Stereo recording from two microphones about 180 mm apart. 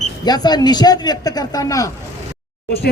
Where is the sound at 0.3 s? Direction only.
20° left (ahead or behind).